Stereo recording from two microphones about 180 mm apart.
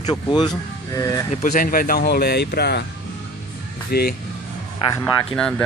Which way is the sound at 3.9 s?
60° left (ahead or behind).